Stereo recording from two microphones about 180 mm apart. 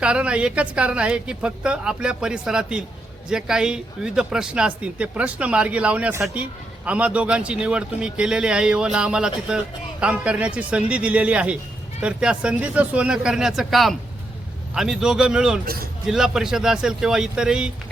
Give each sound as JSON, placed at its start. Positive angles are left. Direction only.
{"t": 0.0, "sound": "a man's voice", "side_deg": -5}
{"t": 15.6, "sound": "speech", "side_deg": -55}
{"t": 16.0, "sound": "speech", "side_deg": -5}